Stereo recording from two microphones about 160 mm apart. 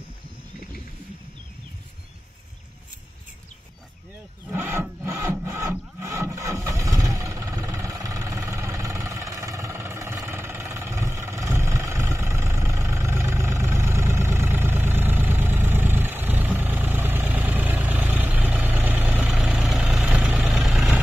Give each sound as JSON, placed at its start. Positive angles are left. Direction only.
{"t": 4.5, "sound": "rub", "side_deg": -15}
{"t": 5.0, "sound": "wood", "side_deg": -15}
{"t": 19.7, "sound": "vehicle", "side_deg": -5}